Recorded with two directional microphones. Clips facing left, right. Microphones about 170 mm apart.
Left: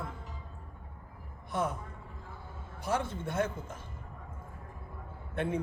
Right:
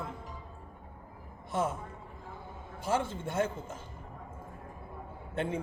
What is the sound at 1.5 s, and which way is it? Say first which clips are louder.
Speech: right 1 dB; 25° right (ahead or behind).